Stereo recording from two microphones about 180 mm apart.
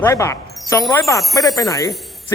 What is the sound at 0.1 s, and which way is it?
A man's voice, 15° left (ahead or behind).